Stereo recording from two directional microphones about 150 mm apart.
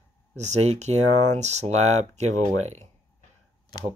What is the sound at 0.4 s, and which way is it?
Speech, 50° right (ahead or behind).